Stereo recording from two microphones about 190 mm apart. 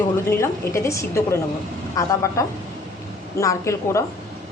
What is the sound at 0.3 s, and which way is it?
A woman's voice, 15° left (ahead or behind).